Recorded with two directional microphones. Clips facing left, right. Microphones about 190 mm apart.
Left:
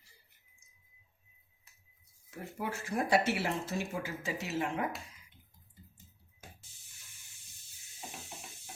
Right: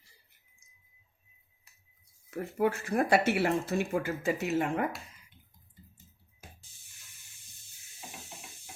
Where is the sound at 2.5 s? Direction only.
60° right (ahead or behind).